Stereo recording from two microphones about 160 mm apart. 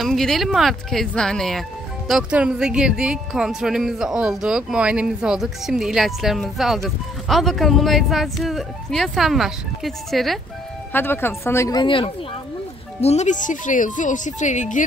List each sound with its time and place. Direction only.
0.0 s speech: centre (ahead or behind)
10.9 s speech: 15° left (ahead or behind)
11.8 s speech: 30° left (ahead or behind)
13.0 s speech: 45° left (ahead or behind)